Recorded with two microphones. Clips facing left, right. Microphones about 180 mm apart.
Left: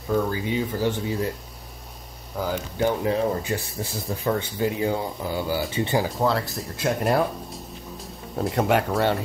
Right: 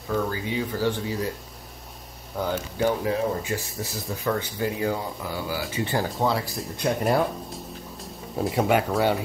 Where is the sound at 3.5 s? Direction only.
30° left (ahead or behind).